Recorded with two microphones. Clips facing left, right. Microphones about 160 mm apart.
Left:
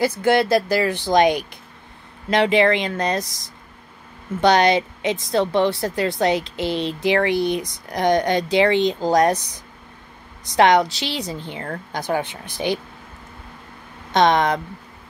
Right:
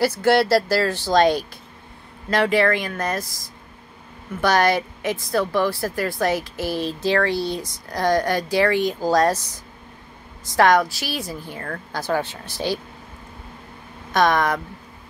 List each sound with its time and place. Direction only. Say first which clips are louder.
0.2 s a woman's voice: even; 15° left (ahead or behind)
4.4 s a woman's voice: left 3 dB; 20° left (ahead or behind)
14.1 s a woman's voice: left 2 dB; 20° left (ahead or behind)